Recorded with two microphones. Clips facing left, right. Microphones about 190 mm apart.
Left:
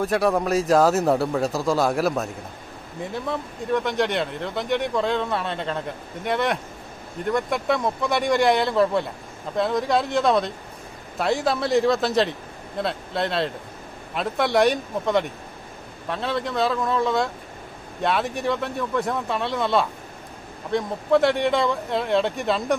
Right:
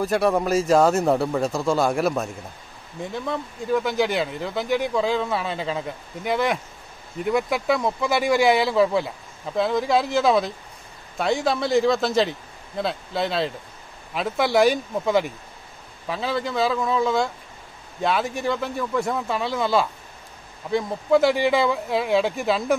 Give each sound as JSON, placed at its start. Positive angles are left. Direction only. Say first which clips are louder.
{"t": 0.0, "sound": "speech", "louder": "even", "side_deg": 0}